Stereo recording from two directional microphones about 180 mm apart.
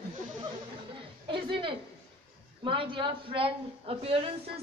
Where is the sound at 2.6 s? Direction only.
30° right (ahead or behind).